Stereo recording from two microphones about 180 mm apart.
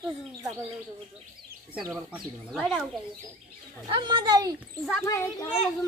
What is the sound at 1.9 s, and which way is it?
Speech, centre (ahead or behind).